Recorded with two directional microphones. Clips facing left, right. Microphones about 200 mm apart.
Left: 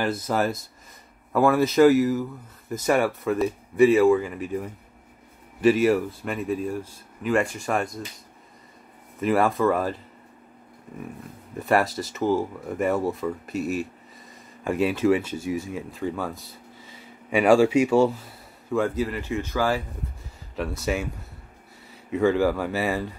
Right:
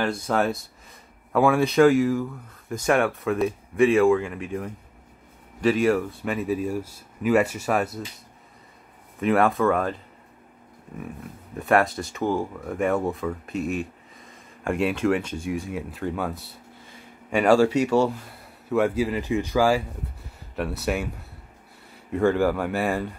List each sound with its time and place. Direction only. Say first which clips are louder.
0.0 s speech: right 1 dB; 5° left (ahead or behind)
9.2 s speech: right 1 dB; centre (ahead or behind)
11.6 s speech: right 1 dB; centre (ahead or behind)
18.7 s speech: right 2 dB; 10° right (ahead or behind)
22.1 s speech: even; centre (ahead or behind)